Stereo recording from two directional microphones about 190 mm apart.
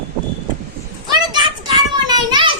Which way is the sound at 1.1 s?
25° right (ahead or behind).